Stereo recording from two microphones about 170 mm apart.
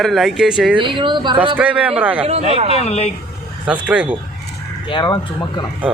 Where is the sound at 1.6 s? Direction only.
10° right (ahead or behind).